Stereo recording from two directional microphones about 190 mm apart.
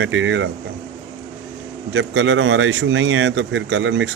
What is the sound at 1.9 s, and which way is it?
Speech, 75° right (ahead or behind).